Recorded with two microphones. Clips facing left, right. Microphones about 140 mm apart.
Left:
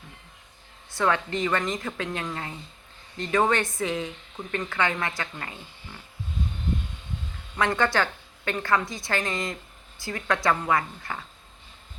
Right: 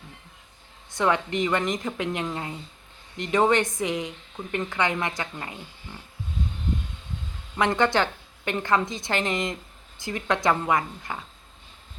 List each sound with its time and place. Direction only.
0.9 s a woman's voice: 20° right (ahead or behind)
7.5 s a woman's voice: 20° right (ahead or behind)